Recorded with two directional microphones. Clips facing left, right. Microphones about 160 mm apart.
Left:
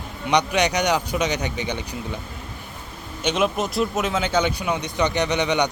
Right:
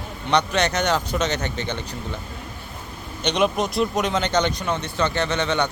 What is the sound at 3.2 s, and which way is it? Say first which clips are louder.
Speech: right 1 dB; 5° left (ahead or behind).